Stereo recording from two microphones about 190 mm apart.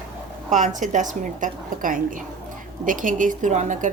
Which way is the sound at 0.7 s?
40° right (ahead or behind).